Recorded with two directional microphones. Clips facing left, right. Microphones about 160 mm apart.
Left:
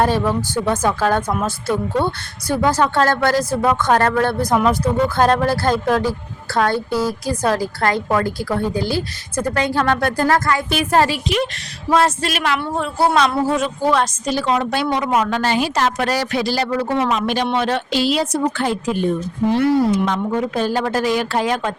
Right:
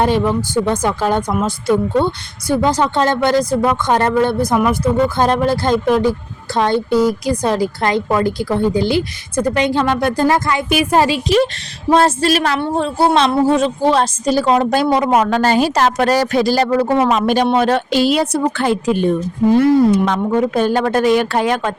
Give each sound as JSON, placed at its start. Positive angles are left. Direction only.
{"t": 0.0, "sound": "speech", "side_deg": -15}
{"t": 11.9, "sound": "a woman's voice", "side_deg": -30}
{"t": 19.5, "sound": "speech", "side_deg": -60}